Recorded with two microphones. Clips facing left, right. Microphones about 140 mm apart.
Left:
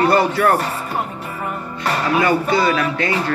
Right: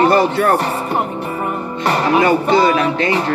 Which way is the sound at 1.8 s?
25° right (ahead or behind).